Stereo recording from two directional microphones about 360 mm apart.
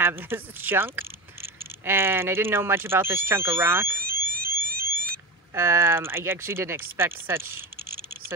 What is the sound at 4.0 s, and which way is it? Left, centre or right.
Fire alarm, right.